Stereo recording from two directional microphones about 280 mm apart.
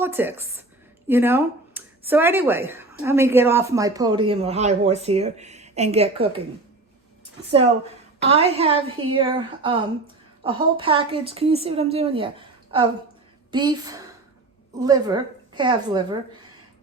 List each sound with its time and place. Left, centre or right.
0.0 s a woman's voice: centre
8.2 s a woman's voice: right